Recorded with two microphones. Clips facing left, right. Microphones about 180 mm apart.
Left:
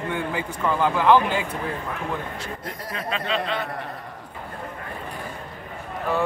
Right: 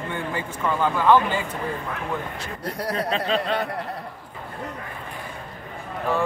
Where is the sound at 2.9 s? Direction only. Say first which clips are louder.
Right 3 dB; 35° right (ahead or behind).